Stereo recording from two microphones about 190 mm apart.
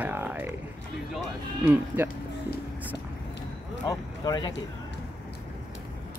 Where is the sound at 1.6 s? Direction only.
10° right (ahead or behind).